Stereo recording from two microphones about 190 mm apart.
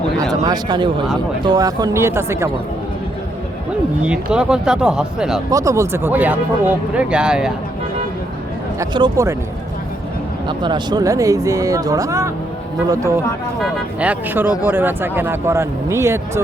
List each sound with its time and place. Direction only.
0.2 s speech: 20° right (ahead or behind)
4.0 s speech: 5° right (ahead or behind)
5.5 s speech: 15° right (ahead or behind)
8.8 s speech: 25° right (ahead or behind)
10.6 s speech: 25° right (ahead or behind)